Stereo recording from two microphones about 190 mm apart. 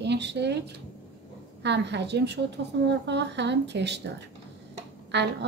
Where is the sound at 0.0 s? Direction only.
65° right (ahead or behind).